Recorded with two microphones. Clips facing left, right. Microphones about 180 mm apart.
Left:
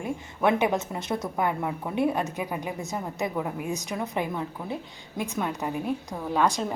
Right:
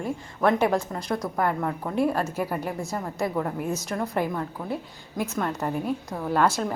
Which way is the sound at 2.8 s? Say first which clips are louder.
Right 2 dB; 20° left (ahead or behind).